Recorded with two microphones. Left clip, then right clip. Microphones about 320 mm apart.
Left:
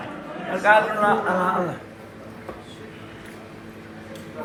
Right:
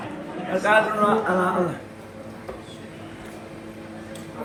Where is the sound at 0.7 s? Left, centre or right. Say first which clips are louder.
Left 2 dB; left.